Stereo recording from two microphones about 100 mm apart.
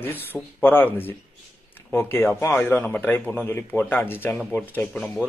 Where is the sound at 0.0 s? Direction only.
20° left (ahead or behind).